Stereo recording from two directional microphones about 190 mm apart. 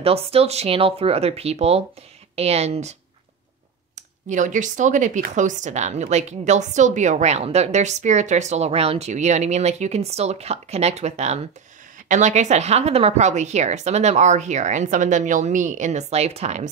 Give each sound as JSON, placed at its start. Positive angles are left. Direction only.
{"t": 0.0, "sound": "speech", "side_deg": -30}